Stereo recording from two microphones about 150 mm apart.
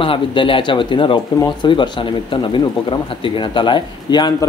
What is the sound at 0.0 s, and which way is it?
Speech, 35° left (ahead or behind).